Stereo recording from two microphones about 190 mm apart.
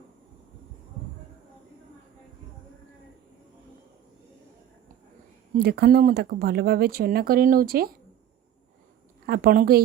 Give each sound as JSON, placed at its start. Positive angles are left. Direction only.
{"t": 5.5, "sound": "speech", "side_deg": -55}
{"t": 9.2, "sound": "a woman's voice", "side_deg": -55}